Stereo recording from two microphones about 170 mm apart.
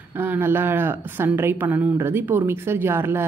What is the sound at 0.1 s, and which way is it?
Speech, 10° right (ahead or behind).